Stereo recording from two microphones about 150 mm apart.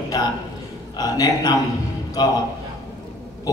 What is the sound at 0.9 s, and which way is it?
Speech, 25° left (ahead or behind).